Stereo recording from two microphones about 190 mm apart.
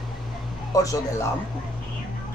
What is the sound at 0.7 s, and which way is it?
Speech, 20° left (ahead or behind).